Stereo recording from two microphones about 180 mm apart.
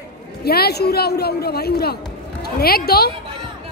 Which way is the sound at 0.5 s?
60° left (ahead or behind).